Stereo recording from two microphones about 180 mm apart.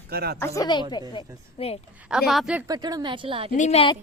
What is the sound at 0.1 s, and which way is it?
Speech, 60° right (ahead or behind).